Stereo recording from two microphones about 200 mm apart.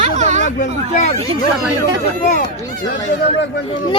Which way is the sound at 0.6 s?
35° left (ahead or behind).